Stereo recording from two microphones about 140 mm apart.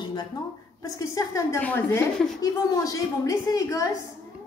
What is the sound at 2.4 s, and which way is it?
A woman's voice, 25° left (ahead or behind).